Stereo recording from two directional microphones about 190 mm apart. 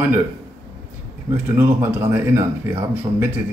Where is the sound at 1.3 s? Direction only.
10° right (ahead or behind).